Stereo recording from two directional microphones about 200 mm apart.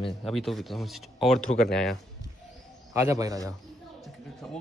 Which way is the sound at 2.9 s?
15° right (ahead or behind).